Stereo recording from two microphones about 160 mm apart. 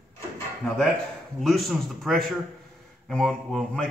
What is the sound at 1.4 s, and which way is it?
A man's voice, centre (ahead or behind).